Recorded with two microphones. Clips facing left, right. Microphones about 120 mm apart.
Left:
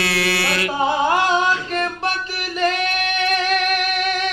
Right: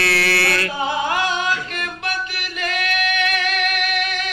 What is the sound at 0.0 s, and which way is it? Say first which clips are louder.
Chant: right 1 dB; 15° left (ahead or behind).